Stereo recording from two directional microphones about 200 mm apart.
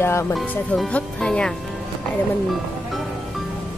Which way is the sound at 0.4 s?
5° left (ahead or behind).